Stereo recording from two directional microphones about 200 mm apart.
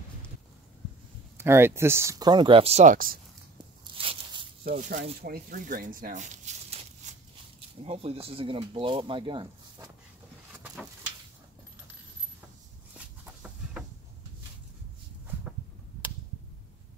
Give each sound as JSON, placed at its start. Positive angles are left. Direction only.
{"t": 1.4, "sound": "speech", "side_deg": -10}
{"t": 3.8, "sound": "crunch", "side_deg": -25}
{"t": 4.6, "sound": "speech", "side_deg": -40}
{"t": 12.9, "sound": "a sound", "side_deg": -5}